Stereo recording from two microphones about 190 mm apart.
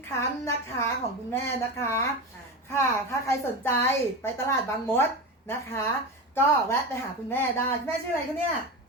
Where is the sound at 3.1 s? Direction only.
15° left (ahead or behind).